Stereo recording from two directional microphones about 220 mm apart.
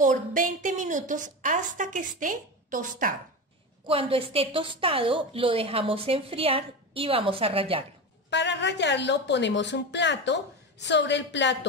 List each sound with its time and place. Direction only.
0.0 s a woman's voice: 35° right (ahead or behind)
3.8 s a woman's voice: 25° right (ahead or behind)
8.3 s a woman's voice: 50° left (ahead or behind)